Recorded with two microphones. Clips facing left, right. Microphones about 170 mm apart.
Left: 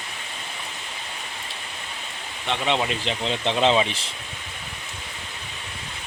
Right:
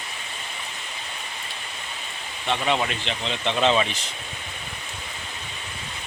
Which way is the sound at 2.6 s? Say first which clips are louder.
Left 1 dB; 20° left (ahead or behind).